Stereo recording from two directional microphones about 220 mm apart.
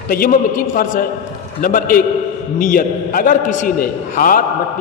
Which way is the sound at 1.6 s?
40° left (ahead or behind).